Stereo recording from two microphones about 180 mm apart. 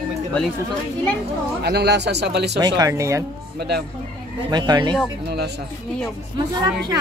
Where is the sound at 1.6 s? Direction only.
65° right (ahead or behind).